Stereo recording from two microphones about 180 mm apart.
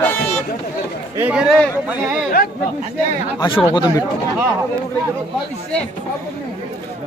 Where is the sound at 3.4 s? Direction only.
25° left (ahead or behind).